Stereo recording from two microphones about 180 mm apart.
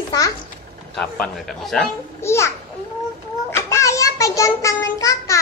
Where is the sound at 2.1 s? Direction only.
15° left (ahead or behind).